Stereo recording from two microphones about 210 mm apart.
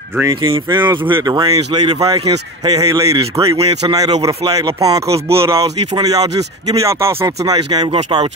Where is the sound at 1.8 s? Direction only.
30° right (ahead or behind).